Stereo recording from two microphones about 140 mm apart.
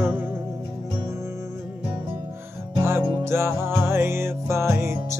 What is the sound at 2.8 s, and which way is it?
Music, 15° right (ahead or behind).